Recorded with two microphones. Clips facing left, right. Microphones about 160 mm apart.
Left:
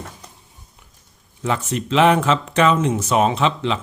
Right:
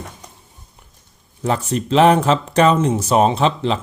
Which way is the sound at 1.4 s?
35° right (ahead or behind).